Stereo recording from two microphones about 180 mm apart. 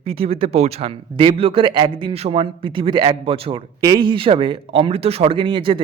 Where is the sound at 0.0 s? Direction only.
35° right (ahead or behind).